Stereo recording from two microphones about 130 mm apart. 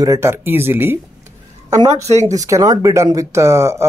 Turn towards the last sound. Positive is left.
turn(degrees=-20)  # may be behind; listen again after turning